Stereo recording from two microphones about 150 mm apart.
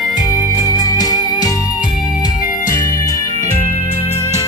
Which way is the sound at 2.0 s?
60° left (ahead or behind).